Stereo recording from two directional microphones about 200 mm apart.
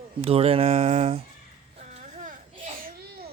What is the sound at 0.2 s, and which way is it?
Speech, 30° right (ahead or behind).